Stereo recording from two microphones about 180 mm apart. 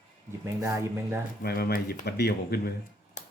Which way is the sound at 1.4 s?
60° left (ahead or behind).